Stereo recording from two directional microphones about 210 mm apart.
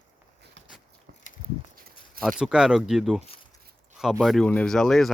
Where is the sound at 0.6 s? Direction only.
60° right (ahead or behind).